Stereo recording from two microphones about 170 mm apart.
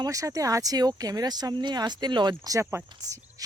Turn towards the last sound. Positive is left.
turn(degrees=-15)  # may be behind; listen again after turning